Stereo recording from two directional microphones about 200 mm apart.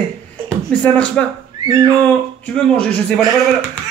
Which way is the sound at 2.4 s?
5° left (ahead or behind).